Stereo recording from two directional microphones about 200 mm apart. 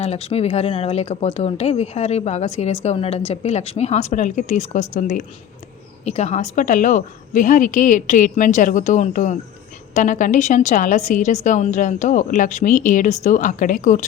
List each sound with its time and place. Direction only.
0.0 s speech: 30° left (ahead or behind)